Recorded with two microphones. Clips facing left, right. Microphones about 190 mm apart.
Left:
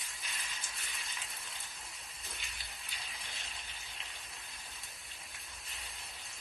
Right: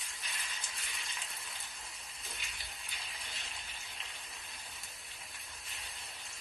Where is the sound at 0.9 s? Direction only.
Centre (ahead or behind).